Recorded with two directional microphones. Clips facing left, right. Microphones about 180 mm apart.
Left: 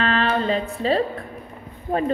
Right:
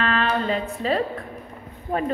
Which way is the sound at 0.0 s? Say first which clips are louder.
Left 2 dB; 30° left (ahead or behind).